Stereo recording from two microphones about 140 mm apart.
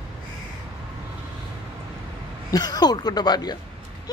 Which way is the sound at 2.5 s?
30° left (ahead or behind).